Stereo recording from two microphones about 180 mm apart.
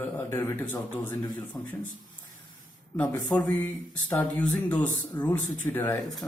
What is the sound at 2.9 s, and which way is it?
Speech, 10° left (ahead or behind).